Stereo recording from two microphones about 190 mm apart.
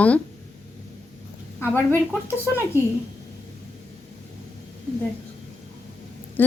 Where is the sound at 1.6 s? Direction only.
10° left (ahead or behind).